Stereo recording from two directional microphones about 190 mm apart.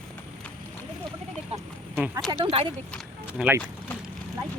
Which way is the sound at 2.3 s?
30° right (ahead or behind).